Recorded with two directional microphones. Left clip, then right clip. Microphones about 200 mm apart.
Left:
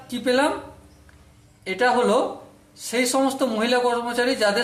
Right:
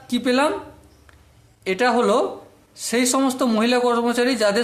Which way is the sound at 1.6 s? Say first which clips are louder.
Right 1 dB; 40° right (ahead or behind).